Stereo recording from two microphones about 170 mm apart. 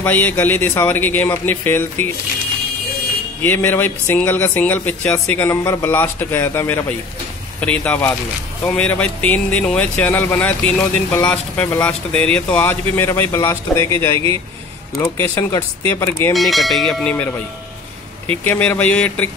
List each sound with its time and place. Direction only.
0.0 s speech: 10° left (ahead or behind)
3.4 s speech: 10° left (ahead or behind)
16.3 s speech: centre (ahead or behind)
18.3 s speech: 10° left (ahead or behind)